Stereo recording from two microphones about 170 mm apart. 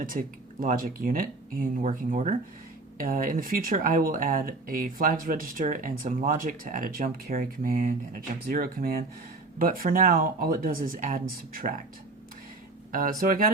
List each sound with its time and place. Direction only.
0.0 s speech: 55° right (ahead or behind)
12.9 s speech: 55° right (ahead or behind)